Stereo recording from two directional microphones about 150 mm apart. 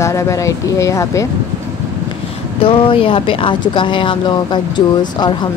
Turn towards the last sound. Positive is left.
turn(degrees=30)  # may be behind; listen again after turning